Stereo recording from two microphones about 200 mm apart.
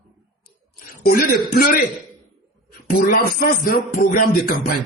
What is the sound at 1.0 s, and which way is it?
Music, 50° left (ahead or behind).